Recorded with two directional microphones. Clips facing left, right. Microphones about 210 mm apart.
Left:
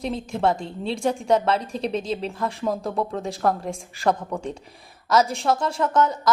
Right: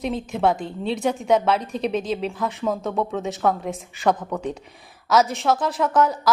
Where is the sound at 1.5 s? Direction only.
30° left (ahead or behind).